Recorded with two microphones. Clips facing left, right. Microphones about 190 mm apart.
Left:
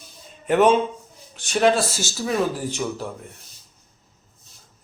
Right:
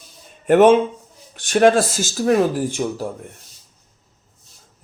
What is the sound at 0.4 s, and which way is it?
Speech, 50° right (ahead or behind).